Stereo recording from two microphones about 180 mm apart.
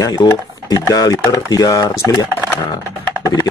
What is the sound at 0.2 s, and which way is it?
Speech, 20° left (ahead or behind).